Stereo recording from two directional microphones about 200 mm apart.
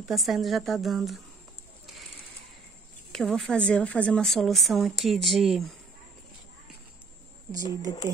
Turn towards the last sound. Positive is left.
turn(degrees=-15)  # may be behind; listen again after turning